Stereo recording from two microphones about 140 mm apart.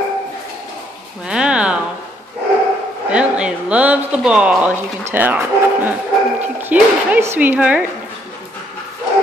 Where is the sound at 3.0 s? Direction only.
10° right (ahead or behind).